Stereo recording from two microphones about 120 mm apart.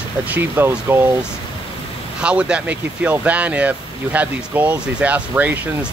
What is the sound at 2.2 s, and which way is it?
Speech, 10° right (ahead or behind).